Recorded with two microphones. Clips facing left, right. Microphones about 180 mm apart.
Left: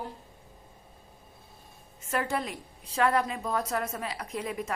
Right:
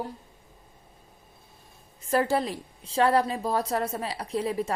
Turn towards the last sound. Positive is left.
turn(degrees=-30)  # may be behind; listen again after turning